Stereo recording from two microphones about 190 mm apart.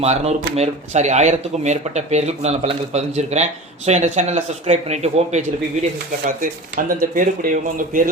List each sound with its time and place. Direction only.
0.0 s speech: 35° right (ahead or behind)